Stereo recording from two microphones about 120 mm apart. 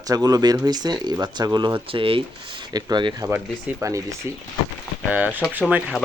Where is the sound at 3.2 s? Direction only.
20° right (ahead or behind).